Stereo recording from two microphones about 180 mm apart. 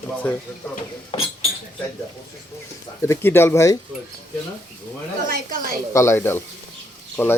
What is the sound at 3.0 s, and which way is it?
Speech, 15° left (ahead or behind).